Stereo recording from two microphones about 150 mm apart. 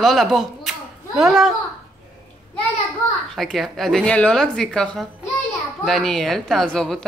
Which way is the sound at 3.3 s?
Centre (ahead or behind).